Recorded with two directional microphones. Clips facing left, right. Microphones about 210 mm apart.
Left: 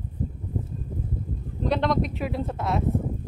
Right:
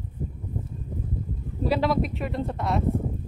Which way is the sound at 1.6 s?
5° right (ahead or behind).